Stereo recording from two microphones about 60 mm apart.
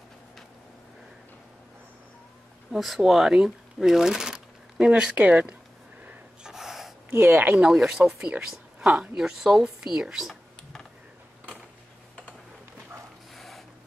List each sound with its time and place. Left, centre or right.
2.7 s speech: centre; by 5.6 s right
6.4 s gasp: centre
7.2 s speech: right
7.6 s speech: centre
9.2 s speech: centre
13.3 s printer: centre